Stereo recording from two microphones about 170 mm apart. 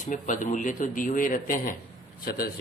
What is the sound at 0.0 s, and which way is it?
Speech, 50° left (ahead or behind).